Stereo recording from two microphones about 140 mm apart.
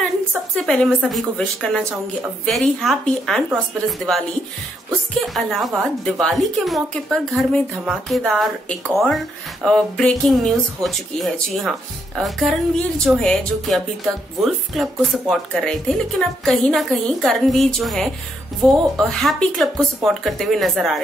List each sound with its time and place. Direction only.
0.0 s a woman's voice: 5° left (ahead or behind)
5.2 s a woman's voice: centre (ahead or behind)